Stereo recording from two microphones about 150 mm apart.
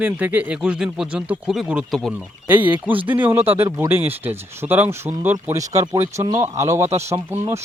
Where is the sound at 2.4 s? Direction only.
10° right (ahead or behind).